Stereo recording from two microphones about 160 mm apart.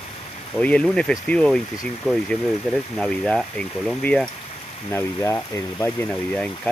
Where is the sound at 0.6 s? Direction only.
5° left (ahead or behind).